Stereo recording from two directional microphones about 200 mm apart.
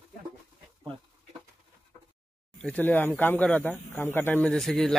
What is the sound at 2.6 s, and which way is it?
Speech, 5° left (ahead or behind).